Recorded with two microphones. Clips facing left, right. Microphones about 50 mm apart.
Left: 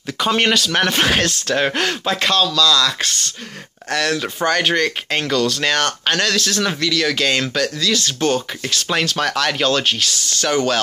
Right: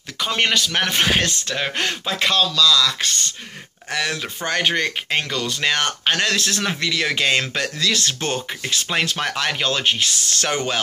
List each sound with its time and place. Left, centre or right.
0.2 s speech: centre
1.5 s speech: centre
1.8 s speech: centre
6.3 s speech: right
7.8 s speech: right
8.8 s speech: centre
10.0 s speech: right